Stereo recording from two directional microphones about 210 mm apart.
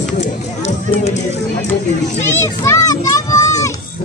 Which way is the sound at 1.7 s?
10° left (ahead or behind).